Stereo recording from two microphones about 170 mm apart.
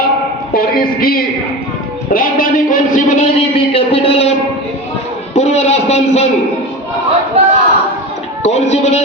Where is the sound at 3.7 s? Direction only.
35° left (ahead or behind).